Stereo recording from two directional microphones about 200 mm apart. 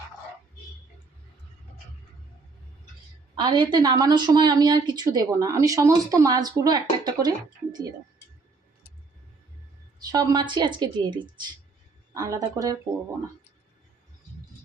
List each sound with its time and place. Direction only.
3.3 s a woman's voice: 25° right (ahead or behind)
10.0 s a woman's voice: 20° right (ahead or behind)